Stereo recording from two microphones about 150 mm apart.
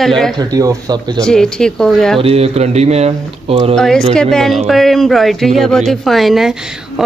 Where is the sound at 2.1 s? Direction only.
40° right (ahead or behind).